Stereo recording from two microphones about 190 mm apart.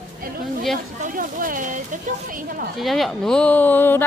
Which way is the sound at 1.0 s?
45° right (ahead or behind).